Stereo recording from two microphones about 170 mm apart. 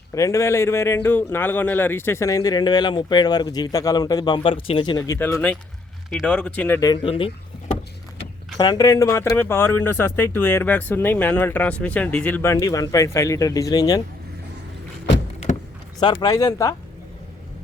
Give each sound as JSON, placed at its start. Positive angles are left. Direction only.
{"t": 0.1, "sound": "a man's voice", "side_deg": 20}
{"t": 4.9, "sound": "speech", "side_deg": 15}
{"t": 7.0, "sound": "speech", "side_deg": 30}
{"t": 8.5, "sound": "a man's voice", "side_deg": 20}
{"t": 15.5, "sound": "power windows", "side_deg": 45}
{"t": 16.2, "sound": "a man's voice", "side_deg": 20}